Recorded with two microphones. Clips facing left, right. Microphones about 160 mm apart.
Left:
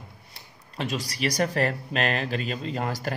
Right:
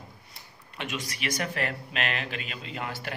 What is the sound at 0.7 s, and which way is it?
Speech, 35° left (ahead or behind).